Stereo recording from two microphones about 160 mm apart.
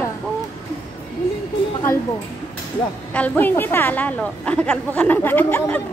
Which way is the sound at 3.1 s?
10° left (ahead or behind).